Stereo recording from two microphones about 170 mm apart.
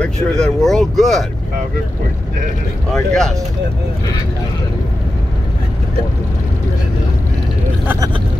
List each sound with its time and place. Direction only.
0.0 s speech: 5° left (ahead or behind)
2.9 s speech: centre (ahead or behind)